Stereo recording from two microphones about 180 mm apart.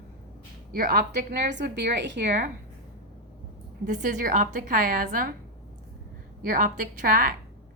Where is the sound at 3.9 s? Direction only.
45° right (ahead or behind).